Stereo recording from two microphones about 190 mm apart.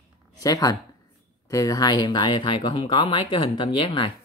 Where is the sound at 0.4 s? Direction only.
20° left (ahead or behind).